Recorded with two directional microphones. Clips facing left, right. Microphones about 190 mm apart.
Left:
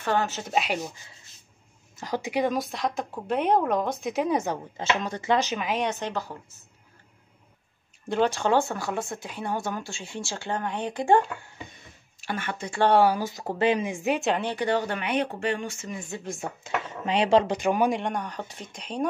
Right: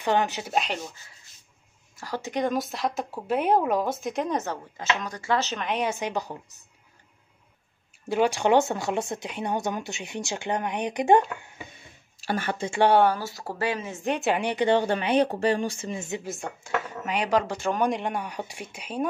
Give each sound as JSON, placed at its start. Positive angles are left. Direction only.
{"t": 0.0, "sound": "speech", "side_deg": -15}
{"t": 0.5, "sound": "speech", "side_deg": 5}
{"t": 4.7, "sound": "speech", "side_deg": 25}
{"t": 8.1, "sound": "speech", "side_deg": -10}
{"t": 12.2, "sound": "speech", "side_deg": -35}
{"t": 12.9, "sound": "speech", "side_deg": 5}
{"t": 13.2, "sound": "speech", "side_deg": 20}
{"t": 14.3, "sound": "speech", "side_deg": -15}
{"t": 16.6, "sound": "speech", "side_deg": 25}